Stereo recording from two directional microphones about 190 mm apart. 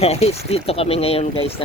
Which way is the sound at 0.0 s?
30° left (ahead or behind).